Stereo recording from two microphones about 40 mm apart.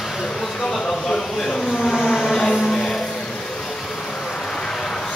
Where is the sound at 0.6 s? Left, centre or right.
Centre.